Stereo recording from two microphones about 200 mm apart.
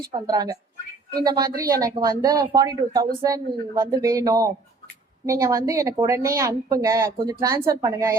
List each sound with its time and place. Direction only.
0.1 s a woman's voice: 20° right (ahead or behind)